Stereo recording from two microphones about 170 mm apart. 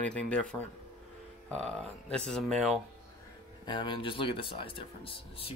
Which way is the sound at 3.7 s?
30° left (ahead or behind).